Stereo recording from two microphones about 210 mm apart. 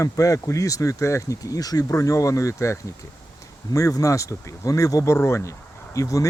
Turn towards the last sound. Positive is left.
turn(degrees=15)  # may be behind; listen again after turning